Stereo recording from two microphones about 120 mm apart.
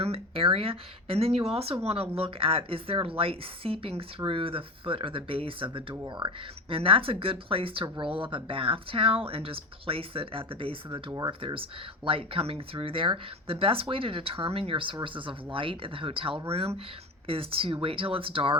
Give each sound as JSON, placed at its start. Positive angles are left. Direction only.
{"t": 0.0, "sound": "speech", "side_deg": -55}